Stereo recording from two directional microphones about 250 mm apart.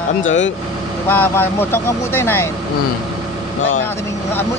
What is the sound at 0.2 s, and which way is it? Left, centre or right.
Speech, left.